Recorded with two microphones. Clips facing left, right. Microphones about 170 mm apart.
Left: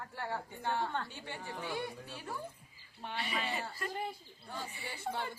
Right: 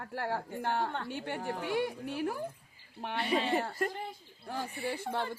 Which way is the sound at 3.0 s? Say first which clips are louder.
Right 7 dB; 60° right (ahead or behind).